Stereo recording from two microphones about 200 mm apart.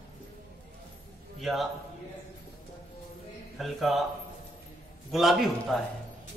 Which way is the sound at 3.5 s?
Centre (ahead or behind).